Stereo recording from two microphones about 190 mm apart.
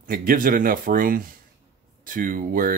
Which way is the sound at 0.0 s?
50° right (ahead or behind).